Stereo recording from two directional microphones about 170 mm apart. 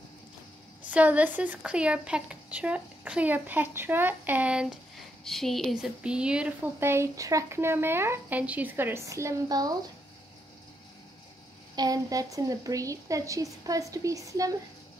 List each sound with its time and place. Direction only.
0.8 s speech: 10° right (ahead or behind)
11.7 s a woman's voice: 20° right (ahead or behind)